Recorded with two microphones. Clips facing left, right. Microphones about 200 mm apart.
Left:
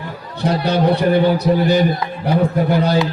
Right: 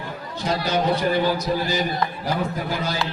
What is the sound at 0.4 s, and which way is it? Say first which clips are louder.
A man's voice: left 6 dB; 60° left (ahead or behind).